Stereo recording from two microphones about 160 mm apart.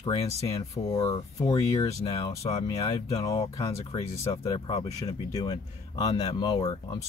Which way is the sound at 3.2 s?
20° left (ahead or behind).